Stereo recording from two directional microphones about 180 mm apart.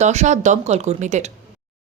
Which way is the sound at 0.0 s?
40° right (ahead or behind).